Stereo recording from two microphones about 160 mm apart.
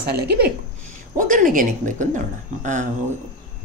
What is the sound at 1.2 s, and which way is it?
Speech, 55° right (ahead or behind).